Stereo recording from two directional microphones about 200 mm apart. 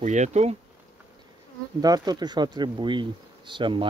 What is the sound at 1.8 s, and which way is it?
Speech, 20° right (ahead or behind).